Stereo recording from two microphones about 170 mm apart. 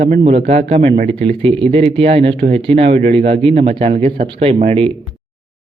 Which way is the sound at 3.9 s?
55° right (ahead or behind).